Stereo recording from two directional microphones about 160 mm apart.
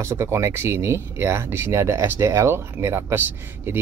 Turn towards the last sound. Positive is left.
turn(degrees=-15)  # may be behind; listen again after turning